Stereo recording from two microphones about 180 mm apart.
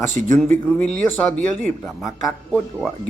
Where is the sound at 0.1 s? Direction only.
45° right (ahead or behind).